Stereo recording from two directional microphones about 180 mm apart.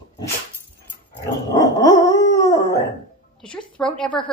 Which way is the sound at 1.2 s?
20° left (ahead or behind).